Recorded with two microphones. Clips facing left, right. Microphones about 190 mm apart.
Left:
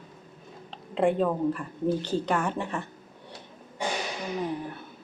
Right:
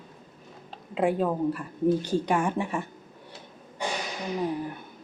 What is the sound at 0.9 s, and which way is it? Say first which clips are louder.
Speech: left 1 dB; 5° right (ahead or behind).